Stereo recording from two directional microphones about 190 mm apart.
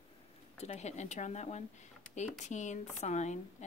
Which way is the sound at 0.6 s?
35° left (ahead or behind).